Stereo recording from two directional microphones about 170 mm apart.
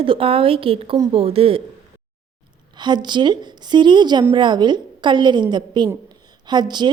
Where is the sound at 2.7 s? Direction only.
25° right (ahead or behind).